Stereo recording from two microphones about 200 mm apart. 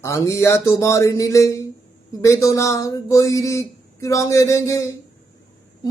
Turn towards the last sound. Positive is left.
turn(degrees=20)  # may be behind; listen again after turning